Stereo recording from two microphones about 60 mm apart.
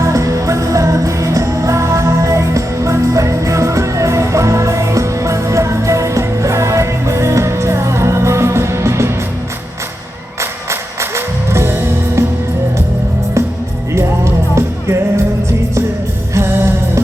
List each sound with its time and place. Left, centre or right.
0.0 s music: right
10.7 s music: right
13.9 s music: right
16.3 s music: right